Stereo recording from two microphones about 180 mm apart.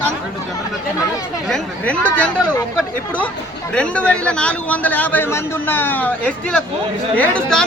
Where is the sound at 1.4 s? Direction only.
5° left (ahead or behind).